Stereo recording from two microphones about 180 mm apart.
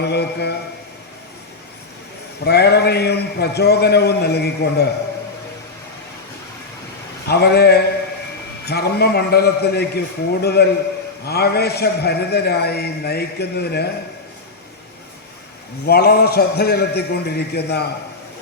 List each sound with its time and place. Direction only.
0.0 s a man's voice: 65° left (ahead or behind)
2.4 s a man's voice: 65° left (ahead or behind)
7.3 s a man's voice: 65° left (ahead or behind)
15.9 s a man's voice: 60° left (ahead or behind)